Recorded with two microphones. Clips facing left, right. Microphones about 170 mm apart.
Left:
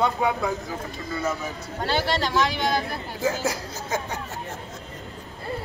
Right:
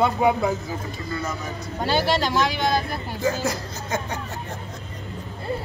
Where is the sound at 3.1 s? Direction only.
5° left (ahead or behind).